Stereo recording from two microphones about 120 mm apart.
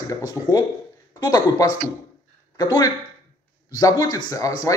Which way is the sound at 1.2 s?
30° left (ahead or behind).